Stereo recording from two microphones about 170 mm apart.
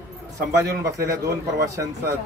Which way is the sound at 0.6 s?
20° right (ahead or behind).